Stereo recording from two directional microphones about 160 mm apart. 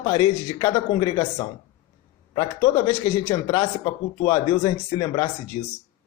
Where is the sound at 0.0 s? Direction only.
25° left (ahead or behind).